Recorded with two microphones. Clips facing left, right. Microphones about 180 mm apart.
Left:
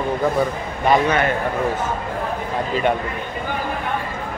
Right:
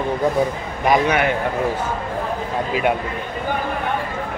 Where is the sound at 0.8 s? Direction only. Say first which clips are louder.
Even; 10° right (ahead or behind).